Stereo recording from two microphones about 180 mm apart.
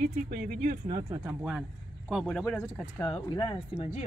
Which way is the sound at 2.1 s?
Centre (ahead or behind).